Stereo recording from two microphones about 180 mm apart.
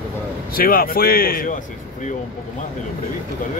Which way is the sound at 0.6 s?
55° left (ahead or behind).